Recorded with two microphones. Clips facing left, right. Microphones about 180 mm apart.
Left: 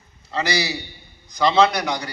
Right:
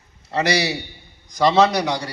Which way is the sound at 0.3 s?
70° right (ahead or behind).